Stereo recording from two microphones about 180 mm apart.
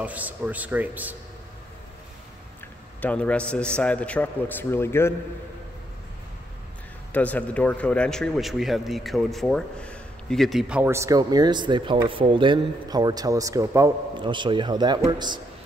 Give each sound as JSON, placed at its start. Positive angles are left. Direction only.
{"t": 0.0, "sound": "speech", "side_deg": -10}
{"t": 3.0, "sound": "a man's voice", "side_deg": 5}
{"t": 7.1, "sound": "a man's voice", "side_deg": 10}